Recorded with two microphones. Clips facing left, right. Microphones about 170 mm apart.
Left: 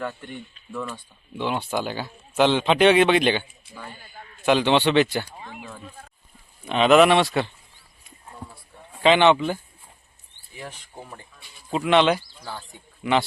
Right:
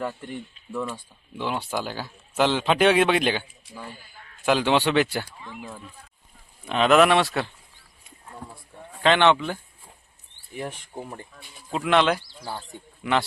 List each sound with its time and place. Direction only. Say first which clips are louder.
0.0 s speech: right 1 dB; 5° right (ahead or behind)
6.7 s speech: left 2 dB; centre (ahead or behind)
9.0 s speech: left 2 dB; centre (ahead or behind)
10.7 s speech: right 4 dB; 20° right (ahead or behind)
11.2 s speech: right 5 dB; 50° right (ahead or behind)
11.7 s speech: left 2 dB; centre (ahead or behind)